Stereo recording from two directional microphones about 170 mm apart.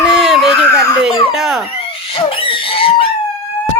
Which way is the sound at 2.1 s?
30° left (ahead or behind).